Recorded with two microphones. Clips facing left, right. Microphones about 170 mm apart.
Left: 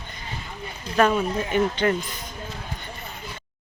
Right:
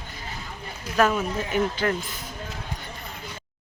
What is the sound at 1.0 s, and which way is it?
Mantra, centre (ahead or behind).